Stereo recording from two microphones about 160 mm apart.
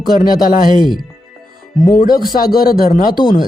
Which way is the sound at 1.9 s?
55° left (ahead or behind).